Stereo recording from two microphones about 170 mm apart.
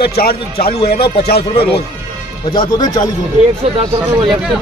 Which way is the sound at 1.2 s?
70° left (ahead or behind).